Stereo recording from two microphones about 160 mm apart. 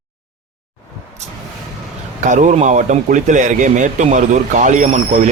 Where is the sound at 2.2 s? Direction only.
50° right (ahead or behind).